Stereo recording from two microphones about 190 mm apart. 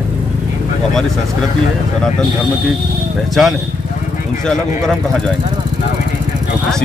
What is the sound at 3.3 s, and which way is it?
A man's voice, centre (ahead or behind).